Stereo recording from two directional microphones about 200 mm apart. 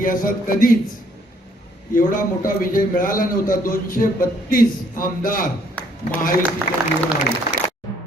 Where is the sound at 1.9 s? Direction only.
40° left (ahead or behind).